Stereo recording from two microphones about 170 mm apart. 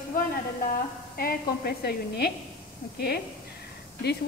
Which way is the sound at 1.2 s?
65° left (ahead or behind).